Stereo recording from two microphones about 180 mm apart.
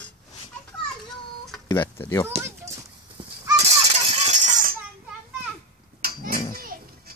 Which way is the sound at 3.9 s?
40° right (ahead or behind).